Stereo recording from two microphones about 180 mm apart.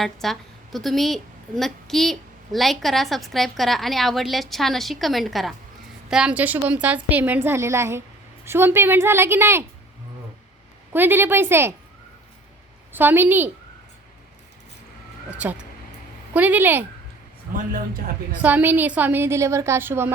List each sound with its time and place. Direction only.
0.0 s a woman's voice: centre (ahead or behind)
10.9 s a woman's voice: 10° right (ahead or behind)
12.9 s a woman's voice: 10° right (ahead or behind)
15.4 s a woman's voice: 5° right (ahead or behind)
17.5 s speech: 50° right (ahead or behind)
18.4 s a woman's voice: 10° right (ahead or behind)